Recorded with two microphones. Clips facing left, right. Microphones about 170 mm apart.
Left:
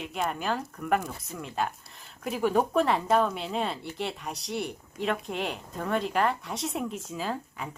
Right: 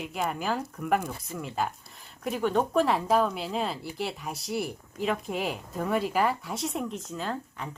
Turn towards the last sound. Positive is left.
turn(degrees=5)  # may be behind; listen again after turning